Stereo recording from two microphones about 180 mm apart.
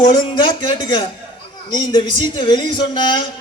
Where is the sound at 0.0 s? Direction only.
25° left (ahead or behind).